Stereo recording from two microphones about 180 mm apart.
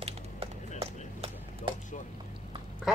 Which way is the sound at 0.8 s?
30° right (ahead or behind).